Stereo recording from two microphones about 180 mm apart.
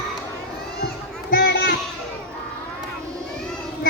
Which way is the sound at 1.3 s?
65° left (ahead or behind).